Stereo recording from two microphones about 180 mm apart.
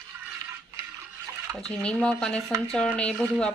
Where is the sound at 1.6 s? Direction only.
5° left (ahead or behind).